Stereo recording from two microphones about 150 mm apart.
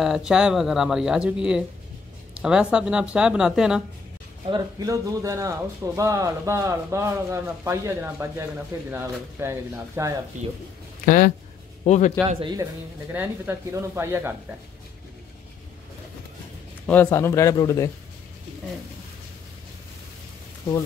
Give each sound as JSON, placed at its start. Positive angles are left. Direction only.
{"t": 0.0, "sound": "speech", "side_deg": -5}
{"t": 4.5, "sound": "a man's voice", "side_deg": -25}
{"t": 10.3, "sound": "speech", "side_deg": -55}
{"t": 11.1, "sound": "speech", "side_deg": 60}
{"t": 11.8, "sound": "a man's voice", "side_deg": 50}
{"t": 13.1, "sound": "a man's voice", "side_deg": -15}
{"t": 16.8, "sound": "speech", "side_deg": 10}